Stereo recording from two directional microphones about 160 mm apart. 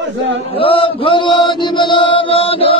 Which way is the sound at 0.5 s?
35° left (ahead or behind).